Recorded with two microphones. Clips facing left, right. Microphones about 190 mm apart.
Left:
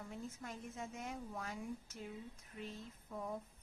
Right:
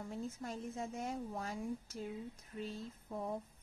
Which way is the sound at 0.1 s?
35° right (ahead or behind).